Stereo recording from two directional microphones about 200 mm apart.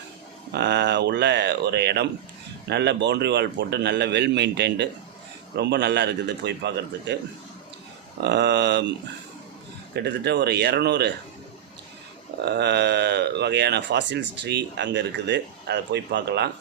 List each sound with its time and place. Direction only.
0.5 s speech: 60° right (ahead or behind)
8.2 s speech: 60° right (ahead or behind)
9.9 s speech: 60° right (ahead or behind)
12.5 s speech: 55° right (ahead or behind)